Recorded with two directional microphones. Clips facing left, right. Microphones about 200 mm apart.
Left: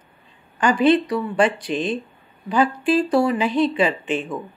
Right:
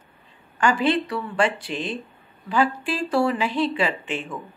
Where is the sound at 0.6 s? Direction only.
20° left (ahead or behind).